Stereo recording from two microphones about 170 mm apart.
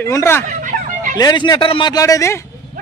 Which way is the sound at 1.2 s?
25° left (ahead or behind).